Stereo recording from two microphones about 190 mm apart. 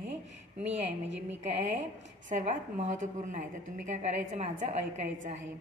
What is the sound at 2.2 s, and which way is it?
Speech, 40° right (ahead or behind).